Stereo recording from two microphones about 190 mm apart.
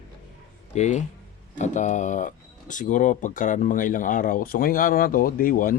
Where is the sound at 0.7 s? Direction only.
40° left (ahead or behind).